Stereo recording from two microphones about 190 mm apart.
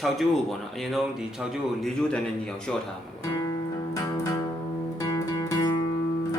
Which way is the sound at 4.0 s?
20° left (ahead or behind).